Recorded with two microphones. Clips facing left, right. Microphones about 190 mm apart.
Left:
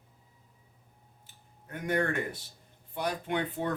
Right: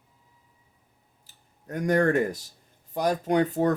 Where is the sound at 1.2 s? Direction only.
40° right (ahead or behind).